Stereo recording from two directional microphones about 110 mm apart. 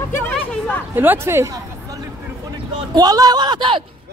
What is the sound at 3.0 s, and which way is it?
Speech, 35° right (ahead or behind).